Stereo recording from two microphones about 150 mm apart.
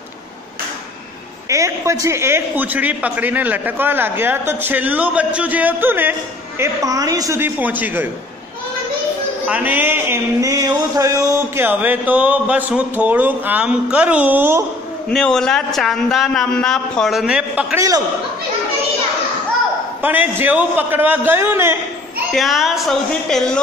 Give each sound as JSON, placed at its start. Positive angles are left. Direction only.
{"t": 1.5, "sound": "speech", "side_deg": -20}
{"t": 9.5, "sound": "speech", "side_deg": -10}
{"t": 15.0, "sound": "a man's voice", "side_deg": 5}
{"t": 17.7, "sound": "a man's voice", "side_deg": -25}
{"t": 20.0, "sound": "speech", "side_deg": -10}
{"t": 22.3, "sound": "a man's voice", "side_deg": 0}